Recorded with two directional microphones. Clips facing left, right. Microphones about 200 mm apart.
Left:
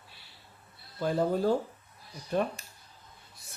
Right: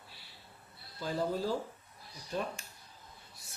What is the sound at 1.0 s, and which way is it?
Speech, 55° left (ahead or behind).